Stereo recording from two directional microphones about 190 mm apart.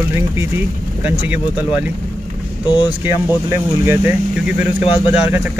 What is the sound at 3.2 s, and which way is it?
Speech, 10° right (ahead or behind).